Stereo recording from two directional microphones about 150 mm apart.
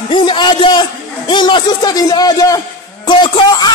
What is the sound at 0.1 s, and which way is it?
A man's voice, 30° left (ahead or behind).